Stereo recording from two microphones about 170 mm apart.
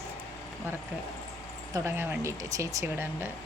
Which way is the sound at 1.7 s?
15° right (ahead or behind).